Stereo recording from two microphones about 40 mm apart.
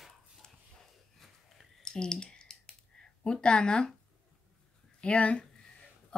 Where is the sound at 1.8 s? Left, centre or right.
Centre.